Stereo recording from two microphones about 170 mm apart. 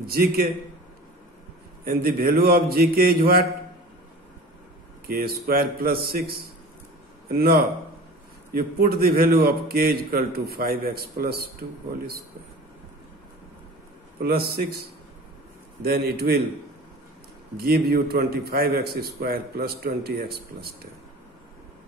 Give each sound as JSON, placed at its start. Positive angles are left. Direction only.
{"t": 0.0, "sound": "a man's voice", "side_deg": -60}
{"t": 1.9, "sound": "a man's voice", "side_deg": -60}
{"t": 5.0, "sound": "a man's voice", "side_deg": -65}
{"t": 7.3, "sound": "a man's voice", "side_deg": -65}
{"t": 14.2, "sound": "a man's voice", "side_deg": -65}
{"t": 15.8, "sound": "a man's voice", "side_deg": -65}
{"t": 17.6, "sound": "a man's voice", "side_deg": -65}